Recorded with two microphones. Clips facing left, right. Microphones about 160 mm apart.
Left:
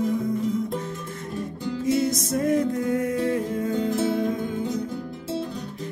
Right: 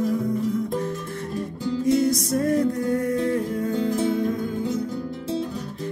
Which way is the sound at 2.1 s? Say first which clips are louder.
Right 2 dB; 20° left (ahead or behind).